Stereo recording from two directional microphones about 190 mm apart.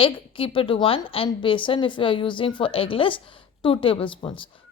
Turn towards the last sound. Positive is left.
turn(degrees=25)  # may be behind; listen again after turning